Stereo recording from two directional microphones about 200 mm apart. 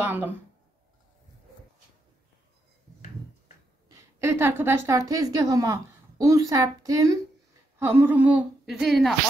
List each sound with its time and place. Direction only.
0.0 s a woman's voice: 10° right (ahead or behind)
3.9 s a woman's voice: 15° right (ahead or behind)